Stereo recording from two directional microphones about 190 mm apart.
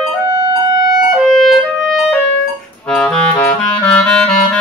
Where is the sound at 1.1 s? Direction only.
Centre (ahead or behind).